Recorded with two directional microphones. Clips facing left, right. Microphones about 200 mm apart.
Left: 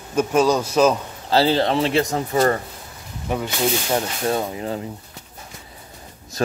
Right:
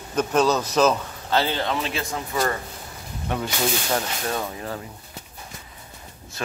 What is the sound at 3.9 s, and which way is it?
Speech, 25° left (ahead or behind).